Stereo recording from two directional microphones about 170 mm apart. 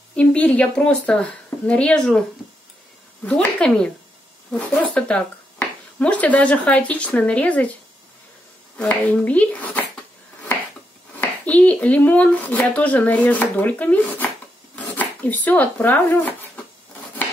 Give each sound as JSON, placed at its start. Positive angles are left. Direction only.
{"t": 0.1, "sound": "speech", "side_deg": 5}
{"t": 3.3, "sound": "speech", "side_deg": 5}
{"t": 8.7, "sound": "speech", "side_deg": 10}
{"t": 11.1, "sound": "speech", "side_deg": 10}